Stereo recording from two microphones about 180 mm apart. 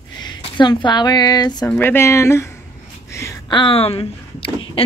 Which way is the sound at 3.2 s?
25° left (ahead or behind).